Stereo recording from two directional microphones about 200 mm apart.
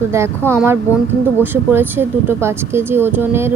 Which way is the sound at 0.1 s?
15° right (ahead or behind).